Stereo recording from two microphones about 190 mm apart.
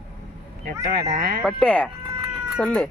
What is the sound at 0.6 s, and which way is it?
Speech, 50° right (ahead or behind).